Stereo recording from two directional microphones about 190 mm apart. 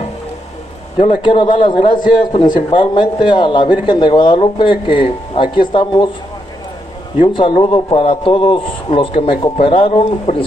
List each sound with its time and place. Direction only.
0.9 s a man's voice: 25° left (ahead or behind)
7.2 s a man's voice: 25° left (ahead or behind)